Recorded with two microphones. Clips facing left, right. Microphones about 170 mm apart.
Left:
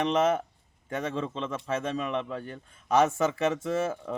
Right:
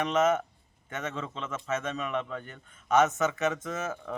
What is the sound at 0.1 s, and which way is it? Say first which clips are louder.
A man's voice: left 1 dB; 30° left (ahead or behind).